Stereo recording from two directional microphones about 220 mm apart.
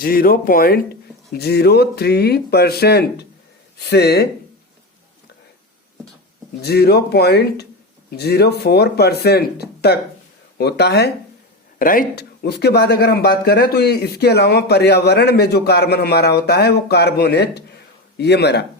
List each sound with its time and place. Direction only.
0.0 s speech: 40° left (ahead or behind)
6.6 s speech: 45° left (ahead or behind)
11.8 s speech: 40° left (ahead or behind)